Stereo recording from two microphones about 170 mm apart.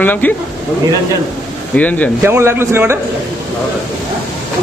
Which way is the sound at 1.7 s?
10° left (ahead or behind).